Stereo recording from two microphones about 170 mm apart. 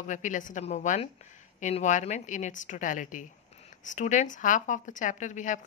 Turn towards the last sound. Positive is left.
turn(degrees=45)  # may be behind; listen again after turning